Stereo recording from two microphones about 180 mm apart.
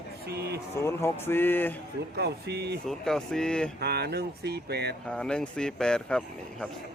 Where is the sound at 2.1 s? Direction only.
65° right (ahead or behind).